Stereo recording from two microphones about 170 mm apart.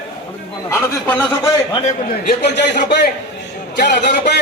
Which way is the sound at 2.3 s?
80° left.